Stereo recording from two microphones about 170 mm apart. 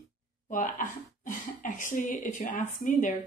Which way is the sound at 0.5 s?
50° left (ahead or behind).